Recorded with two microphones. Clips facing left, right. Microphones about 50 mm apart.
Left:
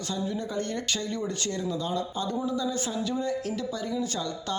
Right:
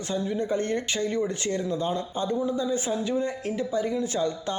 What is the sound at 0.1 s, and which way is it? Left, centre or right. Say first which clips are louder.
Speech: right 5 dB; right.